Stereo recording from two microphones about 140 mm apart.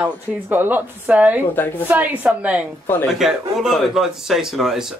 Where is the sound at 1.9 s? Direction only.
10° right (ahead or behind).